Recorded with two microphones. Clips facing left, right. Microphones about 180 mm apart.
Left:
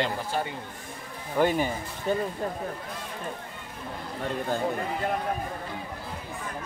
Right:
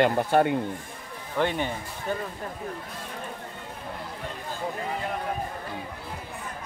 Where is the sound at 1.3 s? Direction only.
5° left (ahead or behind).